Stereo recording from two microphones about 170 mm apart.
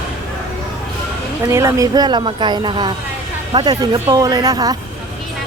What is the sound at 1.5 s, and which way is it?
A woman's voice, 15° right (ahead or behind).